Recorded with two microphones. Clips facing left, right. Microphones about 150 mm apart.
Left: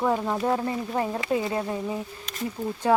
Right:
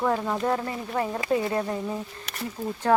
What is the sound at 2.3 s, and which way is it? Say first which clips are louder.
Speech: even; 70° right (ahead or behind).